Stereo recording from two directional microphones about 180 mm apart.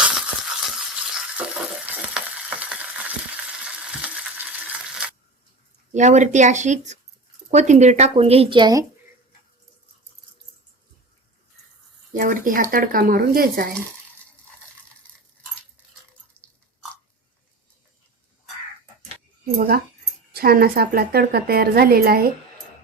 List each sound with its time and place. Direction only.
0.0 s stir: 5° right (ahead or behind)
5.9 s speech: 40° right (ahead or behind); by 8.8 s 25° right (ahead or behind)
12.1 s speech: 50° right (ahead or behind)
16.4 s a sound: 5° left (ahead or behind)
19.5 s a woman's voice: 60° right (ahead or behind)